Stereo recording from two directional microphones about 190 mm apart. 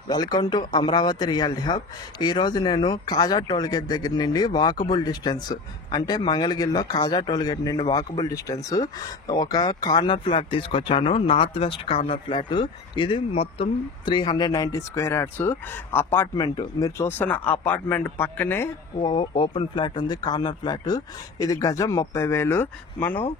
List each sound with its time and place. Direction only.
0.1 s speech: 20° left (ahead or behind)
18.9 s speech: 25° left (ahead or behind)